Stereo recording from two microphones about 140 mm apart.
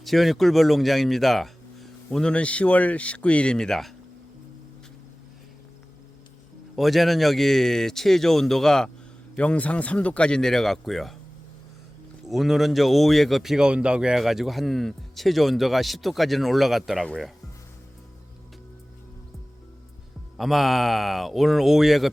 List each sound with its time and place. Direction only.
0.0 s speech: centre (ahead or behind)
6.7 s speech: centre (ahead or behind)
12.2 s speech: centre (ahead or behind)
20.3 s speech: centre (ahead or behind)